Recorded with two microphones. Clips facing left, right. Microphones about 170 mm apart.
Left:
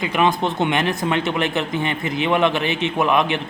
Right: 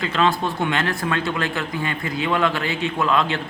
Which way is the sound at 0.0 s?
15° left (ahead or behind).